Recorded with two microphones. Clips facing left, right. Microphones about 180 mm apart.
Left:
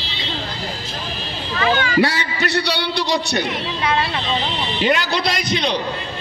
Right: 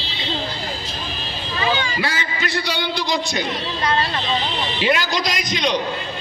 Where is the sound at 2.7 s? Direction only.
70° left (ahead or behind).